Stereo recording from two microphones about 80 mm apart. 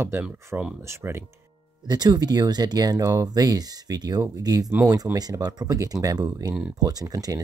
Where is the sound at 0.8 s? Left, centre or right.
Right.